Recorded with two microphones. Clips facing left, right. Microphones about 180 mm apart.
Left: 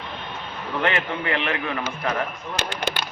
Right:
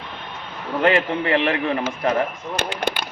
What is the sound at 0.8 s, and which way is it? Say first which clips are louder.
A man's voice: right 6 dB; 35° right (ahead or behind).